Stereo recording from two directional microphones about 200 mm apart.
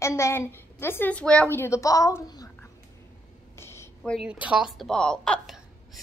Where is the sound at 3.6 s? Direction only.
10° left (ahead or behind).